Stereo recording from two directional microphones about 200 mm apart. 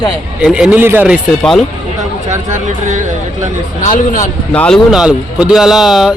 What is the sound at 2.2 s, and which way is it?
Speech, 35° right (ahead or behind).